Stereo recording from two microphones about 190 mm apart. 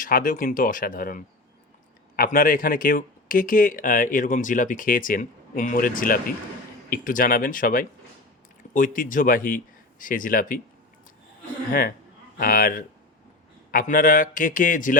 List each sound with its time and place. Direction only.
0.0 s speech: 45° left (ahead or behind)
11.7 s speech: 50° left (ahead or behind)